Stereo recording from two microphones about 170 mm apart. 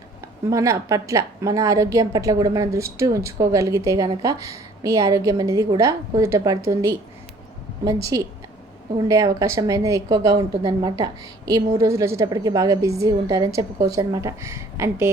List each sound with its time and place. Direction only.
0.5 s a woman's voice: 20° right (ahead or behind)